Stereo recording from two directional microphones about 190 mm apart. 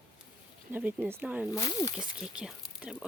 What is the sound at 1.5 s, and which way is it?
Speech, 15° left (ahead or behind).